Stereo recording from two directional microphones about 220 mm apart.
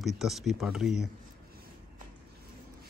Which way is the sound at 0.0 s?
Centre (ahead or behind).